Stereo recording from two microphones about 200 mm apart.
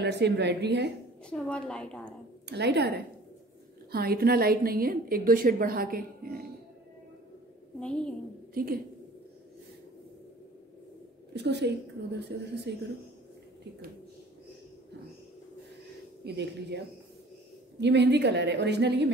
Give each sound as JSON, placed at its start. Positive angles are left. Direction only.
{"t": 0.0, "sound": "a woman's voice", "side_deg": -55}
{"t": 1.2, "sound": "a woman's voice", "side_deg": 5}
{"t": 2.4, "sound": "a woman's voice", "side_deg": -55}
{"t": 7.8, "sound": "a woman's voice", "side_deg": 5}
{"t": 8.5, "sound": "a woman's voice", "side_deg": -45}
{"t": 11.3, "sound": "a woman's voice", "side_deg": -60}
{"t": 16.3, "sound": "a woman's voice", "side_deg": -55}